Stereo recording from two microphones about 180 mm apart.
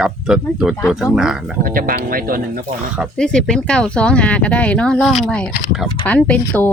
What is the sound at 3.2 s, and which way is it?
A woman's voice, 5° left (ahead or behind).